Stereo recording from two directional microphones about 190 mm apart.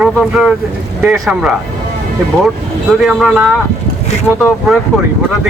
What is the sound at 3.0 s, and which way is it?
Speech, 5° right (ahead or behind).